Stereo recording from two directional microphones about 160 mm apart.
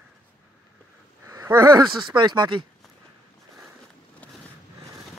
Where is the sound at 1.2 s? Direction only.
15° right (ahead or behind).